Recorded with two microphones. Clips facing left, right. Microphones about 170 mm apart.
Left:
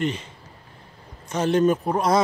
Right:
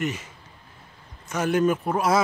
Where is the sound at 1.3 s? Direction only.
25° left (ahead or behind).